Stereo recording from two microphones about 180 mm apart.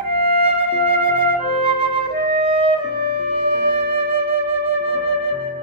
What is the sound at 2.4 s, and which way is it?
Music, 30° right (ahead or behind).